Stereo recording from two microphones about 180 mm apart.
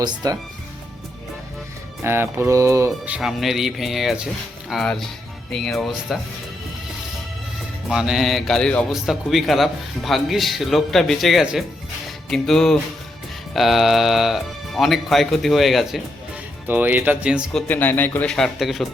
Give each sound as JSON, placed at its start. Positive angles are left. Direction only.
{"t": 0.0, "sound": "speech", "side_deg": -20}
{"t": 2.0, "sound": "speech", "side_deg": -15}
{"t": 3.2, "sound": "speech", "side_deg": 0}
{"t": 7.9, "sound": "speech", "side_deg": -5}
{"t": 17.7, "sound": "a man's voice", "side_deg": 10}